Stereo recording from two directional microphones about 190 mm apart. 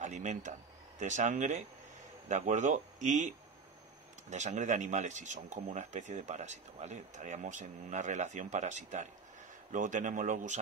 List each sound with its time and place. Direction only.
0.0 s speech: 40° right (ahead or behind)